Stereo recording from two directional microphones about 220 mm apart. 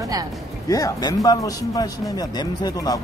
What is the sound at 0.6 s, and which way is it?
Speech, 15° left (ahead or behind).